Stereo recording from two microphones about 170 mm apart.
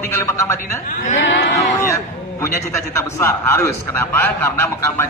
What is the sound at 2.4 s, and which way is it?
A man's voice, 15° left (ahead or behind).